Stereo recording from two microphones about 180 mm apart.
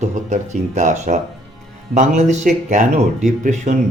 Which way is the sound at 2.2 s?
40° right (ahead or behind).